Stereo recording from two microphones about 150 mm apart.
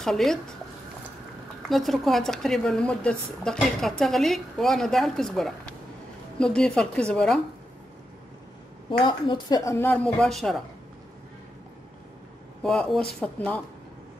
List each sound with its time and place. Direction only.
0.0 s a woman's voice: centre (ahead or behind)
1.7 s a woman's voice: centre (ahead or behind)
9.0 s speech: 30° left (ahead or behind)
9.7 s speech: 15° left (ahead or behind)
12.6 s a woman's voice: 5° left (ahead or behind)